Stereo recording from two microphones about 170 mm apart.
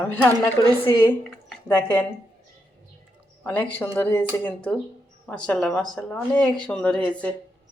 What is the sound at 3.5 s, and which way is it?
A woman's voice, 10° left (ahead or behind).